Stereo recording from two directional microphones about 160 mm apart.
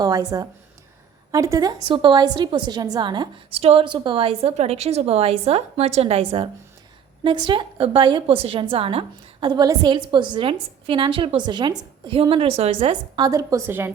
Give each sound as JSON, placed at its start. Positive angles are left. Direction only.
{"t": 0.0, "sound": "a woman's voice", "side_deg": -25}
{"t": 1.9, "sound": "a woman's voice", "side_deg": -30}